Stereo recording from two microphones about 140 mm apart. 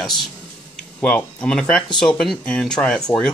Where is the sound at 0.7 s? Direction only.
5° left (ahead or behind).